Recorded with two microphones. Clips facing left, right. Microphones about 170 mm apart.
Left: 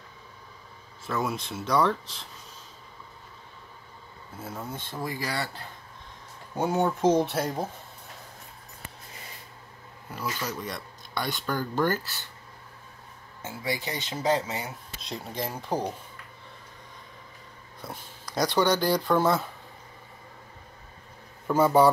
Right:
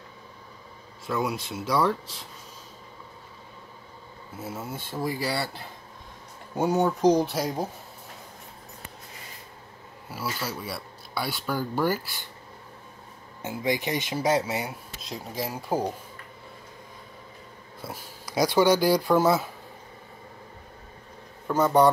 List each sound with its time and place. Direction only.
1.0 s speech: centre (ahead or behind)
4.4 s speech: 5° right (ahead or behind)
6.5 s speech: centre (ahead or behind)
10.1 s a sound: 5° right (ahead or behind)
10.4 s speech: 10° right (ahead or behind)
13.4 s speech: 15° right (ahead or behind)
15.0 s speech: centre (ahead or behind)
17.8 s speech: 10° right (ahead or behind)
21.5 s speech: 5° left (ahead or behind)